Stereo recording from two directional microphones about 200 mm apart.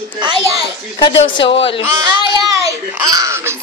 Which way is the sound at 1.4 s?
25° left (ahead or behind).